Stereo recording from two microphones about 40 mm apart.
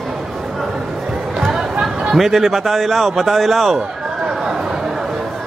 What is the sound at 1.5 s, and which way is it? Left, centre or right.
Chatter, centre.